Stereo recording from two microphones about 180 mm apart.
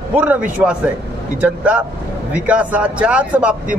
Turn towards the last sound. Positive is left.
turn(degrees=-5)  # may be behind; listen again after turning